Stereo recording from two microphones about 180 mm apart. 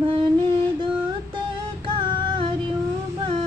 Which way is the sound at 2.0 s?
25° right (ahead or behind).